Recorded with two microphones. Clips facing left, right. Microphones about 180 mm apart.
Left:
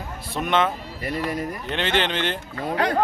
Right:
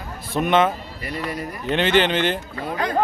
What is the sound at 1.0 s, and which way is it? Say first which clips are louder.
Speech: left 2 dB; 45° left (ahead or behind).